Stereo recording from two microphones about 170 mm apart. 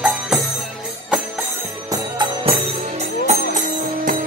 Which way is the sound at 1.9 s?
25° right (ahead or behind).